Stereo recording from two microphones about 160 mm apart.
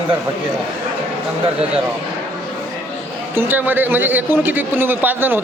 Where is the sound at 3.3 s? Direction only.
15° right (ahead or behind).